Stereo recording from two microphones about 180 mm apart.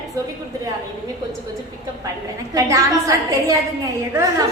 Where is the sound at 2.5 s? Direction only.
20° right (ahead or behind).